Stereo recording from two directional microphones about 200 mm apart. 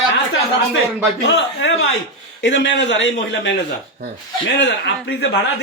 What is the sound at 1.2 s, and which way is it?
A man's voice, 60° left (ahead or behind).